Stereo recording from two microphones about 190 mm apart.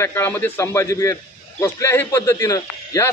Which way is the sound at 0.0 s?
10° left (ahead or behind).